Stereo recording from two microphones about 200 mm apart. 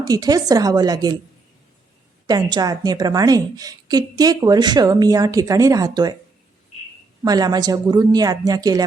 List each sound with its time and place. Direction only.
0.0 s a woman's voice: 20° right (ahead or behind)
2.2 s a woman's voice: 20° right (ahead or behind)
7.3 s a woman's voice: 20° right (ahead or behind)